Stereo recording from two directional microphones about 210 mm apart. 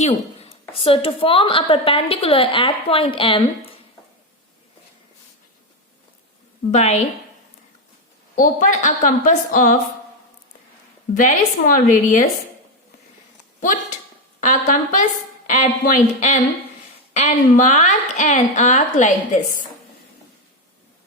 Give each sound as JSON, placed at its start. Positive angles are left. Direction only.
{"t": 0.0, "sound": "a woman's voice", "side_deg": 25}
{"t": 6.7, "sound": "a woman's voice", "side_deg": 30}
{"t": 8.4, "sound": "a woman's voice", "side_deg": 40}
{"t": 11.2, "sound": "a woman's voice", "side_deg": 40}
{"t": 13.6, "sound": "a sound", "side_deg": 40}
{"t": 14.4, "sound": "a woman's voice", "side_deg": 35}